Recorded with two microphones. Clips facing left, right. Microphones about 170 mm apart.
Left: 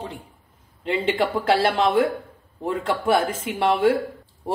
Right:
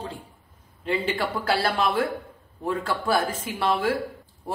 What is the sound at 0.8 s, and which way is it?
A woman's voice, 25° left (ahead or behind).